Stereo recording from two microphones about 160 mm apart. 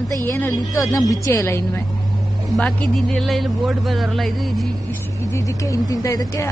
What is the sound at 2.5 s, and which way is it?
Speech, 5° left (ahead or behind).